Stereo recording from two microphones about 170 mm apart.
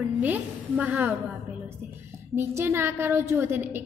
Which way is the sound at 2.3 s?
15° right (ahead or behind).